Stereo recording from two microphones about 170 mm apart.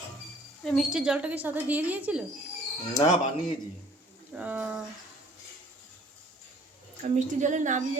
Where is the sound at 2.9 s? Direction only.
25° left (ahead or behind).